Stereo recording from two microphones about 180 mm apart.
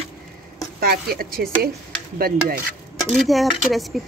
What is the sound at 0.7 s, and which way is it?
Speech, 60° right (ahead or behind).